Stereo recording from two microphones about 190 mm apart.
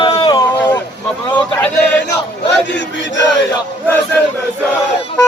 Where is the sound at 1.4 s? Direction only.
10° left (ahead or behind).